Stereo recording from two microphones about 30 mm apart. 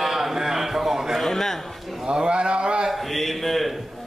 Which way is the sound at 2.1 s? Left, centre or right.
Right.